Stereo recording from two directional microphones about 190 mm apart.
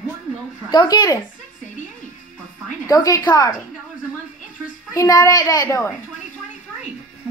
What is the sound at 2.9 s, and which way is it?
Speech, 20° left (ahead or behind).